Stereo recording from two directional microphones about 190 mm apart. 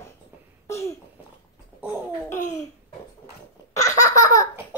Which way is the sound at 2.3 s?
40° left (ahead or behind).